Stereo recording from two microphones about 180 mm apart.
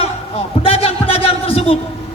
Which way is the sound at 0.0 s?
30° left (ahead or behind).